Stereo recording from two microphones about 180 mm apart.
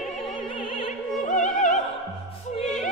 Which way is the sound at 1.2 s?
45° left (ahead or behind).